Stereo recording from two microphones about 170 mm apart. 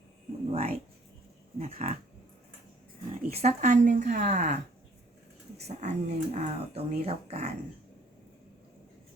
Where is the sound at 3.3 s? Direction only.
40° right (ahead or behind).